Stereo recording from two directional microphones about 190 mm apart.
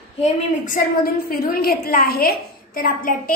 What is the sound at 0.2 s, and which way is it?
A woman's voice, 45° left (ahead or behind).